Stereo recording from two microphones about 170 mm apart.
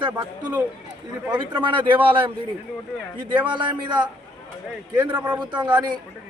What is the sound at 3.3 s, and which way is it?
Speech, 30° right (ahead or behind).